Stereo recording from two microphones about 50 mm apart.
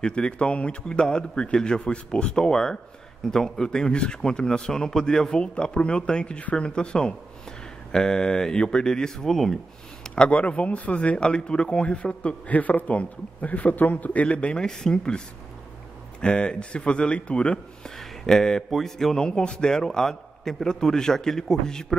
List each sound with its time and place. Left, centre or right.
0.0 s a man's voice: centre
10.1 s speech: left
12.4 s speech: left
17.8 s a man's voice: centre
19.2 s a man's voice: centre